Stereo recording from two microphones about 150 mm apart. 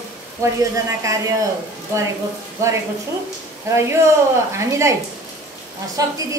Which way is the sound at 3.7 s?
20° right (ahead or behind).